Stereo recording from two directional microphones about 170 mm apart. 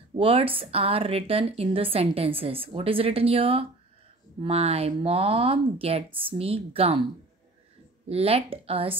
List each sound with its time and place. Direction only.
0.1 s speech: 35° right (ahead or behind)
8.1 s speech: 35° right (ahead or behind)